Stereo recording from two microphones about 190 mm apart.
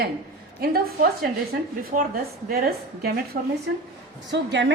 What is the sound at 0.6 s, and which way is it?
A woman's voice, 50° right (ahead or behind).